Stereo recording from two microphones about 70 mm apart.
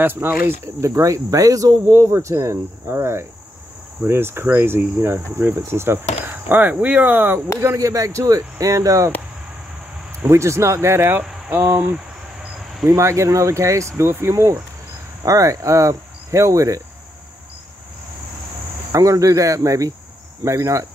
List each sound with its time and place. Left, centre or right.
0.0 s speech: right
0.5 s speech: right
6.5 s speech: right
7.6 s speech: right
10.2 s speech: right
12.8 s speech: right
18.9 s speech: right